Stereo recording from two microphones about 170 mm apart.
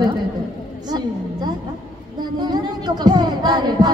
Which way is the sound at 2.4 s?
25° right (ahead or behind).